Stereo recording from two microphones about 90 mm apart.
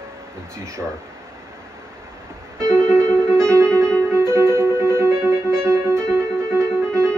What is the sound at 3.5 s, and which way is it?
Music, 35° right (ahead or behind).